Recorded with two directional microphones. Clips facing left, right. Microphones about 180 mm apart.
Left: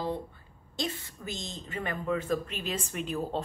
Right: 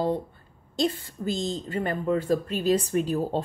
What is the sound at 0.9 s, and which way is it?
A woman's voice, 30° right (ahead or behind).